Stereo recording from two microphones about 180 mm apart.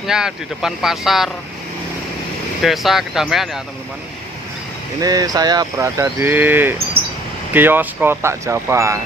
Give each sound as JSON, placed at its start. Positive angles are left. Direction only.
{"t": 0.0, "sound": "speech", "side_deg": -5}
{"t": 2.6, "sound": "speech", "side_deg": 0}
{"t": 5.0, "sound": "speech", "side_deg": -20}